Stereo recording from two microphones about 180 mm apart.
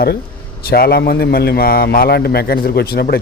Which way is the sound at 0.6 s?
60° left (ahead or behind).